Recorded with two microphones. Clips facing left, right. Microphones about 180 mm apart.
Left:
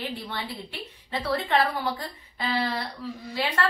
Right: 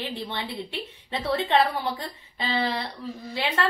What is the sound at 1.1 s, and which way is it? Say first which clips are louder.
A woman's voice: right 2 dB; 25° right (ahead or behind).